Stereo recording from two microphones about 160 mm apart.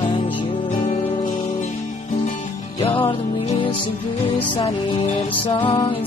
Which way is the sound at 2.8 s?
35° left (ahead or behind).